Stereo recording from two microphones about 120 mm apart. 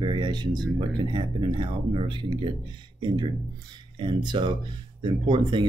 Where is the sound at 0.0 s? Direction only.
40° right (ahead or behind).